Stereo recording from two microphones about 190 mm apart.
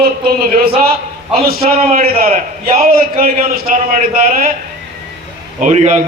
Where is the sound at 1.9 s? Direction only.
50° right (ahead or behind).